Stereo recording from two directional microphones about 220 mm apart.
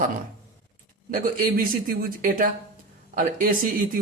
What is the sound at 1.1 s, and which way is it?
A man's voice, 40° right (ahead or behind).